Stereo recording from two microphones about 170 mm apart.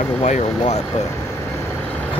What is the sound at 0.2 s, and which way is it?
Speech, 40° left (ahead or behind).